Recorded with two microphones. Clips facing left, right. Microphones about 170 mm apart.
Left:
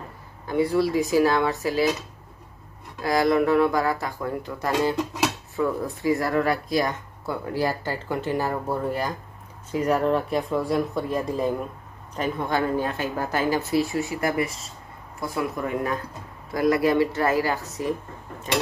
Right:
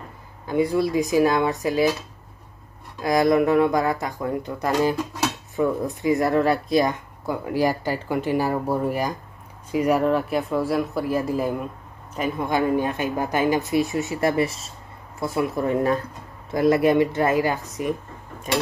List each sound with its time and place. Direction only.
0.5 s speech: 15° right (ahead or behind)
3.0 s speech: 20° right (ahead or behind)